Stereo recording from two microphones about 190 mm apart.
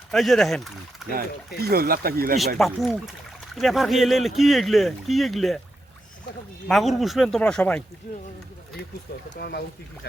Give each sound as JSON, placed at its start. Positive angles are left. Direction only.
{"t": 0.1, "sound": "speech", "side_deg": 0}
{"t": 1.6, "sound": "speech", "side_deg": -55}
{"t": 2.6, "sound": "speech", "side_deg": 0}
{"t": 6.7, "sound": "speech", "side_deg": 0}
{"t": 9.3, "sound": "speech", "side_deg": 60}